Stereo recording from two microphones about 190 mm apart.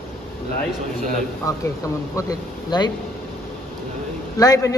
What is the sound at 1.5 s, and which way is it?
A man's voice, 15° left (ahead or behind).